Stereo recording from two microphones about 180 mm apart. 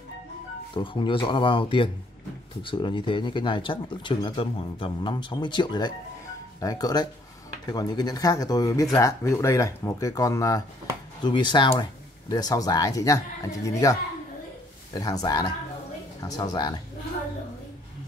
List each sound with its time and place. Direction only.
0.7 s speech: 30° left (ahead or behind)
15.0 s speech: 20° left (ahead or behind)